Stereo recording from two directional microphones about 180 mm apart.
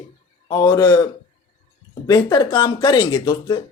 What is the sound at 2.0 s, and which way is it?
Speech, 20° left (ahead or behind).